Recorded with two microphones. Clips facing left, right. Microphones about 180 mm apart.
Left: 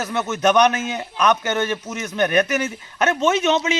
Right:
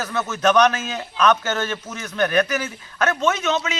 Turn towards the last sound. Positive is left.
turn(degrees=25)  # may be behind; listen again after turning